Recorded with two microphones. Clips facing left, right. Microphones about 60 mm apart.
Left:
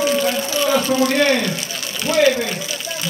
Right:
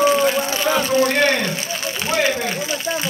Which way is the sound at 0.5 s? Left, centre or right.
Right.